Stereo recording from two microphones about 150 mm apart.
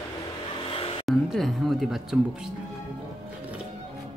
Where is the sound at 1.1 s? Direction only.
Centre (ahead or behind).